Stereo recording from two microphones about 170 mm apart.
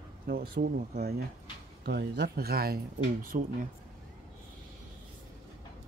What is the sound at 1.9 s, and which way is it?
Speech, 75° right (ahead or behind).